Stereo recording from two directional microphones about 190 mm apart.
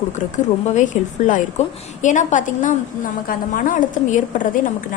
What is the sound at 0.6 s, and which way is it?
A woman's voice, 40° left (ahead or behind).